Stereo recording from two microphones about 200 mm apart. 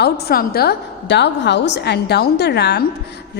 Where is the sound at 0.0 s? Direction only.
50° left (ahead or behind).